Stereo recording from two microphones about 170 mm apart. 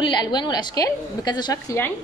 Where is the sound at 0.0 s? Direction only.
25° left (ahead or behind).